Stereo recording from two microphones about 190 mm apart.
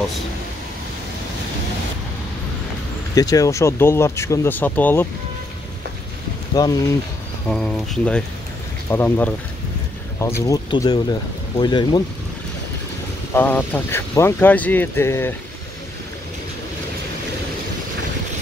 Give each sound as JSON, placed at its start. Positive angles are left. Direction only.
{"t": 3.2, "sound": "speech", "side_deg": 20}
{"t": 6.5, "sound": "speech", "side_deg": 20}
{"t": 7.4, "sound": "speech", "side_deg": 0}
{"t": 13.3, "sound": "speech", "side_deg": 10}